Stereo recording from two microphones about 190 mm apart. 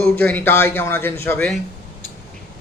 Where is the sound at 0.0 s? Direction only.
10° left (ahead or behind).